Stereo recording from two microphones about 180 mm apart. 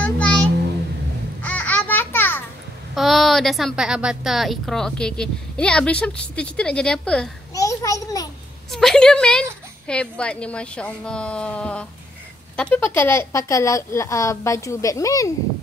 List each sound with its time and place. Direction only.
0.0 s a sound: 10° left (ahead or behind)
1.4 s babbling: 10° left (ahead or behind)
2.9 s a woman's voice: centre (ahead or behind)
7.5 s a child's voice: 20° left (ahead or behind)
8.7 s a woman's voice: 5° left (ahead or behind)